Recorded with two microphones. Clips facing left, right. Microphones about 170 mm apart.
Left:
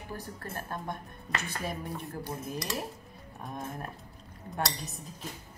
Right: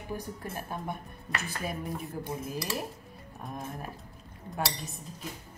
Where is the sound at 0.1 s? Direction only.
15° right (ahead or behind).